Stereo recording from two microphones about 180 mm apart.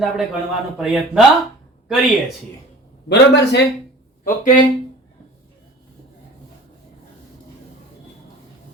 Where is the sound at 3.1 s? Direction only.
70° left (ahead or behind).